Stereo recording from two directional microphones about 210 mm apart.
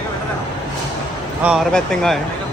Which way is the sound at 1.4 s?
Centre (ahead or behind).